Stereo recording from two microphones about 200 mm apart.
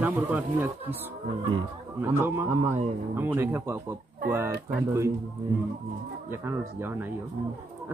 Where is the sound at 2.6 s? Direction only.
30° right (ahead or behind).